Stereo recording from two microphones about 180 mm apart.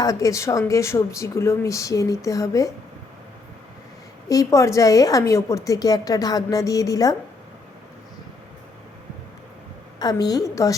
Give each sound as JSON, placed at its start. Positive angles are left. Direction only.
{"t": 0.0, "sound": "speech", "side_deg": 20}
{"t": 4.3, "sound": "a woman's voice", "side_deg": 20}
{"t": 10.0, "sound": "a woman's voice", "side_deg": 20}